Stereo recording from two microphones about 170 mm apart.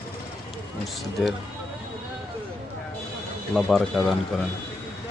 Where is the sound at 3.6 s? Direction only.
Centre (ahead or behind).